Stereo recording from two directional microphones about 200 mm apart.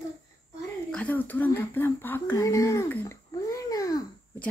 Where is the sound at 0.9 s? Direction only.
10° left (ahead or behind).